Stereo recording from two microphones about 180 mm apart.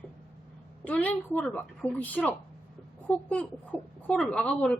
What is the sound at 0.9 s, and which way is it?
Speech, 5° left (ahead or behind).